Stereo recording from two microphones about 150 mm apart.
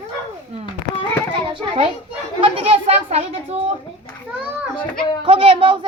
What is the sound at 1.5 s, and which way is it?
A child's voice, 35° right (ahead or behind).